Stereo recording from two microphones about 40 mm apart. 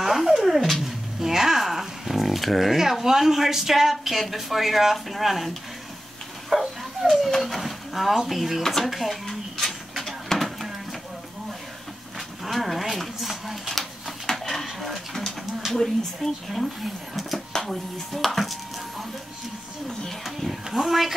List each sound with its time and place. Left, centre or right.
0.0 s cat: centre
1.2 s dog: centre
2.8 s speech: centre
6.5 s dog: centre
7.2 s speech: centre
8.8 s a sound: centre
12.4 s speech: centre
13.3 s a sound: centre
15.7 s speech: centre
20.2 s speech: centre